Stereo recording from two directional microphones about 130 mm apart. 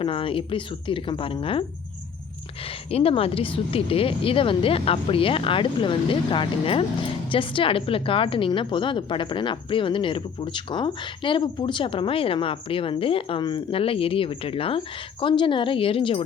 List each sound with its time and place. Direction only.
0.0 s speech: 40° left (ahead or behind)
2.6 s a woman's voice: 45° left (ahead or behind)